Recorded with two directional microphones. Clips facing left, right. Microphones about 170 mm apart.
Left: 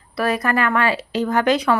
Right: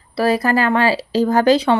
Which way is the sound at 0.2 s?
30° right (ahead or behind).